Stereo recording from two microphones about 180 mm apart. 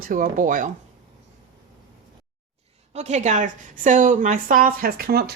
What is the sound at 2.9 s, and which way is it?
A woman's voice, 40° right (ahead or behind).